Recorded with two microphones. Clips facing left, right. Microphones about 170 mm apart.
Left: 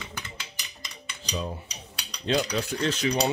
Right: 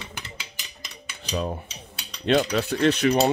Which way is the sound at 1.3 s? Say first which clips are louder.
Right 5 dB; 60° right (ahead or behind).